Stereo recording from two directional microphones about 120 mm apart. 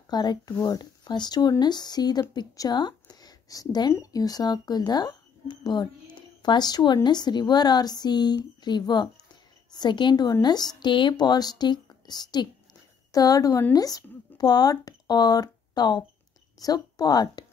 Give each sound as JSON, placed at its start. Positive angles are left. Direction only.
{"t": 0.1, "sound": "a woman's voice", "side_deg": 35}